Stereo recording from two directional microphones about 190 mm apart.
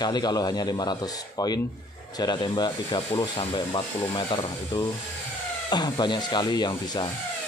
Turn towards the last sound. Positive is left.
turn(degrees=20)  # may be behind; listen again after turning